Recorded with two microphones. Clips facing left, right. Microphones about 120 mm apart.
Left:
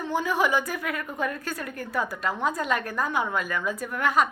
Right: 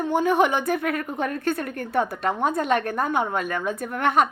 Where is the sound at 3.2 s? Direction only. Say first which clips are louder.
Right 3 dB; 35° right (ahead or behind).